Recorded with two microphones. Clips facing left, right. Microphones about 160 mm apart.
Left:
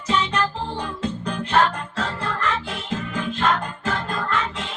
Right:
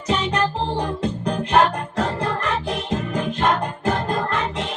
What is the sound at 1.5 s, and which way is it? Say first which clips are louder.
Music: right 2 dB; 15° right (ahead or behind).